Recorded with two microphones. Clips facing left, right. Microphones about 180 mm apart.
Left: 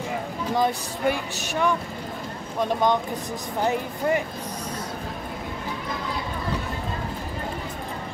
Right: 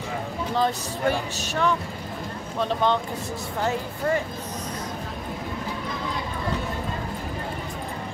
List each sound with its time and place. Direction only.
0.6 s speech: 15° left (ahead or behind)